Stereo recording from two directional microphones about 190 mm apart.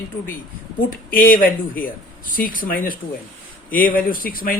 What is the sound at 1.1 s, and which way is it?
Speech, 50° left (ahead or behind).